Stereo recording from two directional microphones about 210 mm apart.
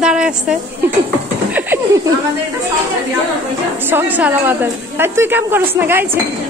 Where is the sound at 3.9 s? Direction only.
10° right (ahead or behind).